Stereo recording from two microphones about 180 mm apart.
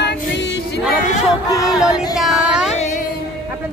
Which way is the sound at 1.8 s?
Centre (ahead or behind).